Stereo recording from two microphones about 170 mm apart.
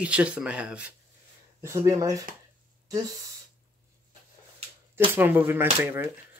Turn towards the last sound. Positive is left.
turn(degrees=-10)  # may be behind; listen again after turning